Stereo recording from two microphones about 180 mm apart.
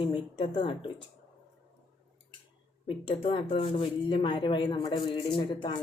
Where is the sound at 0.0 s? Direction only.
30° left (ahead or behind).